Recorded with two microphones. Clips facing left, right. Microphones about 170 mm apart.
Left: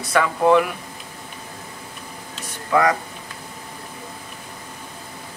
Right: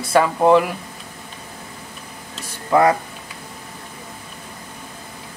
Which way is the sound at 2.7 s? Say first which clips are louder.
Right 3 dB; 30° right (ahead or behind).